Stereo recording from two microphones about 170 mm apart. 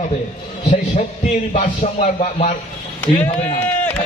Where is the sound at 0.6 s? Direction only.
40° left (ahead or behind).